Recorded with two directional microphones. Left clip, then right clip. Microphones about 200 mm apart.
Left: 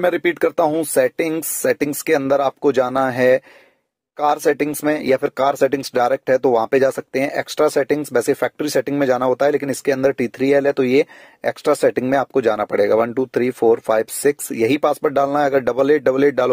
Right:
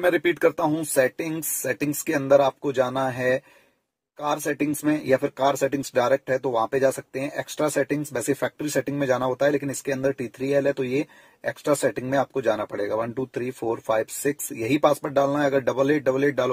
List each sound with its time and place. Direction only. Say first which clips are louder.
0.0 s speech: left 3 dB; 30° left (ahead or behind)